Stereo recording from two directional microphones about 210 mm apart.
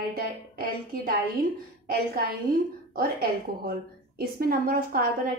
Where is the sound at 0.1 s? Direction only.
45° right (ahead or behind).